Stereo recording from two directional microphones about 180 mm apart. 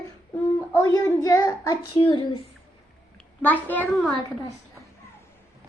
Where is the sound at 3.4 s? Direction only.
10° left (ahead or behind).